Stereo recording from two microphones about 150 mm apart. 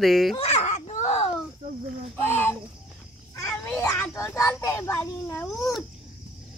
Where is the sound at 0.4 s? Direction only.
45° left (ahead or behind).